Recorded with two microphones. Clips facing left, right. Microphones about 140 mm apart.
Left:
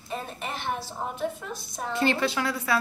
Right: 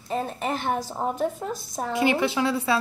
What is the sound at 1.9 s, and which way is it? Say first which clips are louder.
Speech: right 3 dB; 15° right (ahead or behind).